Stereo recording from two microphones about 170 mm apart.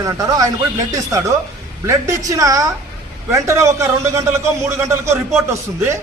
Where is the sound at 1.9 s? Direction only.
20° right (ahead or behind).